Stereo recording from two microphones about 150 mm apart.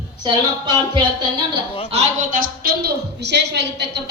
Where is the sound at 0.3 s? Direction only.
30° right (ahead or behind).